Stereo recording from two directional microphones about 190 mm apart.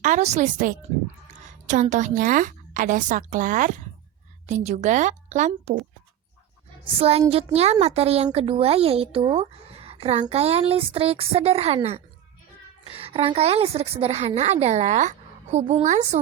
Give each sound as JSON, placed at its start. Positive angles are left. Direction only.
{"t": 0.0, "sound": "a child's voice", "side_deg": -40}
{"t": 7.0, "sound": "a child's voice", "side_deg": -30}